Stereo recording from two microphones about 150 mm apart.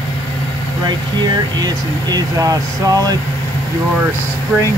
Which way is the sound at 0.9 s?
30° right (ahead or behind).